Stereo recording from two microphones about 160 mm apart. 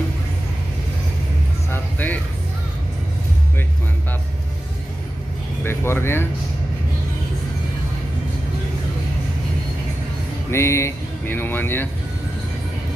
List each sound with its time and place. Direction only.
1.7 s vehicle: 10° left (ahead or behind)
5.6 s music: 15° left (ahead or behind)
10.5 s speech: 15° left (ahead or behind)